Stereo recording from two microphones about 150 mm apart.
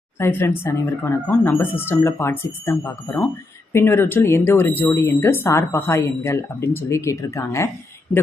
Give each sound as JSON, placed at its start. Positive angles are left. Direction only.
{"t": 0.2, "sound": "speech", "side_deg": 15}
{"t": 8.1, "sound": "speech", "side_deg": 5}